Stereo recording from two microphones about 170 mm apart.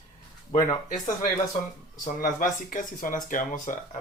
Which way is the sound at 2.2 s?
50° left (ahead or behind).